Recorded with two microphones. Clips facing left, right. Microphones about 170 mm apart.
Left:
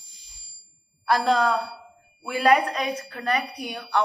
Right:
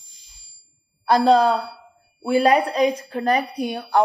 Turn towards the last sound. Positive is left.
turn(degrees=-30)  # may be behind; listen again after turning